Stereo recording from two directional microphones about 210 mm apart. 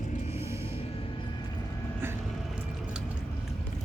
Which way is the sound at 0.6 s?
25° left (ahead or behind).